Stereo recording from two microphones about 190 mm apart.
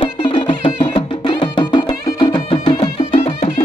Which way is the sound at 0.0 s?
25° left (ahead or behind).